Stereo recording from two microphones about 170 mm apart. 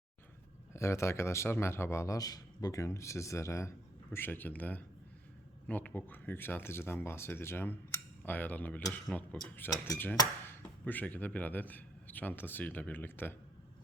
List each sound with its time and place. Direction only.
0.7 s a man's voice: 15° left (ahead or behind)
9.8 s speech: 20° left (ahead or behind)